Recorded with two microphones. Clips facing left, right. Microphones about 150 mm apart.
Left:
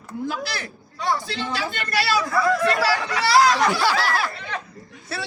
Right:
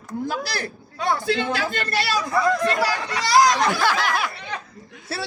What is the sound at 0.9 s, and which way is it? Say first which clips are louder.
Speech: right 3 dB; 55° right (ahead or behind).